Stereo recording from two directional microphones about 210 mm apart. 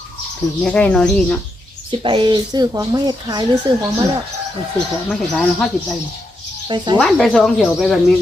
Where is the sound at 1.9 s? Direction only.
25° right (ahead or behind).